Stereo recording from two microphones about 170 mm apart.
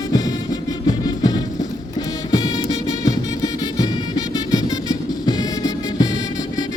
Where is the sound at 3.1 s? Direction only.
20° left (ahead or behind).